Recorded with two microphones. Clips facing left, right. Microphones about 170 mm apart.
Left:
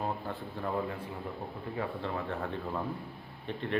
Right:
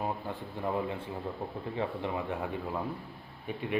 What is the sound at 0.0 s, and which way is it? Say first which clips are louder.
A man's voice: even; 15° right (ahead or behind).